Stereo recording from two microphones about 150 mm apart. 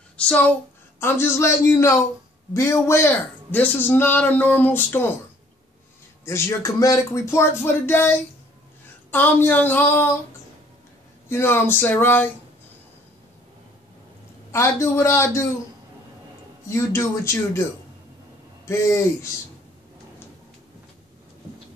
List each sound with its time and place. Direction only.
0.2 s speech: 10° left (ahead or behind)
6.2 s speech: 15° left (ahead or behind)
11.2 s speech: 15° left (ahead or behind)
14.5 s speech: 20° left (ahead or behind)
16.6 s speech: 20° left (ahead or behind)
18.7 s speech: 20° left (ahead or behind)